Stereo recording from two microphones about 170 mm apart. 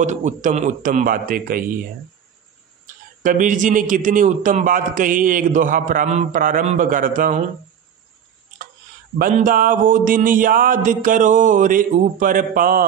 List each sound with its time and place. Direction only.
0.0 s a man's voice: 45° right (ahead or behind)
3.2 s a man's voice: 50° right (ahead or behind)
9.2 s a man's voice: 50° right (ahead or behind)